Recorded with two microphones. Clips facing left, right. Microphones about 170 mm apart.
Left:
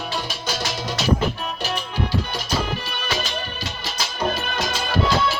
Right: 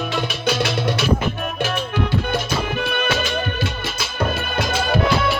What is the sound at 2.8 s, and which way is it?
Music, 55° right (ahead or behind).